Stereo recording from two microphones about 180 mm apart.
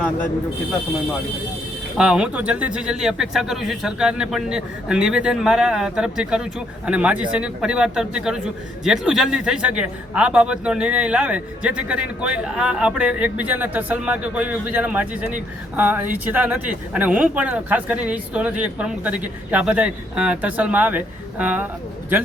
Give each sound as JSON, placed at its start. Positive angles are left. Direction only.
{"t": 2.0, "sound": "a man's voice", "side_deg": -5}